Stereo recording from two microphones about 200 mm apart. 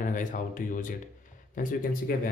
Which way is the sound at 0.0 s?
40° left (ahead or behind).